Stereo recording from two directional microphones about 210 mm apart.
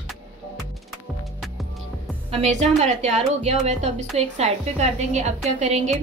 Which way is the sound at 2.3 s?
35° right (ahead or behind).